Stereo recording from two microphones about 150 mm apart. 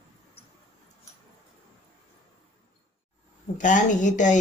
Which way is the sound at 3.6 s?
55° left (ahead or behind).